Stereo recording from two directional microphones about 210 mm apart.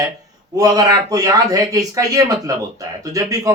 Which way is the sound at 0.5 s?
15° right (ahead or behind).